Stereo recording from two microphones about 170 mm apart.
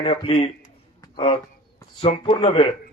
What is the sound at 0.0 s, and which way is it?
A man's voice, 35° left (ahead or behind).